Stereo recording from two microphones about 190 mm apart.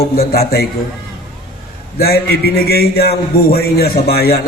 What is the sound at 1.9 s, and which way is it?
A man's voice, 55° left (ahead or behind).